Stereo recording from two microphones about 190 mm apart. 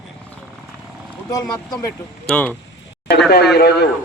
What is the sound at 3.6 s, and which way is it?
Speech, 55° left (ahead or behind).